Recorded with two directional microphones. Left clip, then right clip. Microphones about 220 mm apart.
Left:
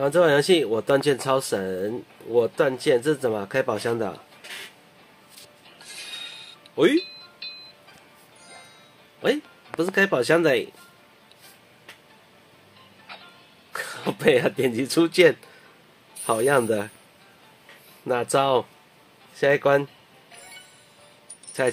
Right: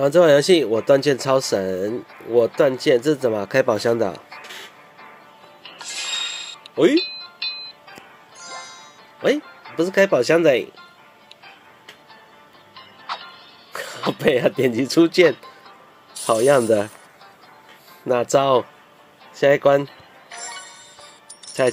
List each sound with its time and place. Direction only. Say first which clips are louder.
0.0 s speech: right 5 dB; 20° right (ahead or behind)
5.8 s music: right 10 dB; centre (ahead or behind)
9.2 s speech: right 4 dB; 10° right (ahead or behind)
13.7 s a sound: right 1 dB; 15° right (ahead or behind)
14.1 s speech: right 1 dB; 15° right (ahead or behind)
18.0 s speech: right 4 dB; 20° right (ahead or behind)
20.2 s music: right 11 dB; centre (ahead or behind)
21.5 s keys jangling: right 5 dB; centre (ahead or behind)